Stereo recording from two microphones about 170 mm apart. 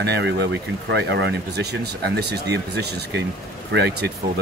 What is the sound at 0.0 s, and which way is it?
Speech, 80° right.